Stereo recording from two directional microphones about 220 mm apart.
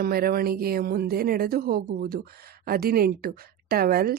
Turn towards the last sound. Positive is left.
turn(degrees=-45)  # may be behind; listen again after turning